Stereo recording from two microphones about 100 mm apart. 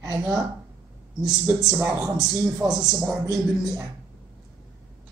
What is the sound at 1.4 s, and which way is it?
A man's voice, 5° right (ahead or behind).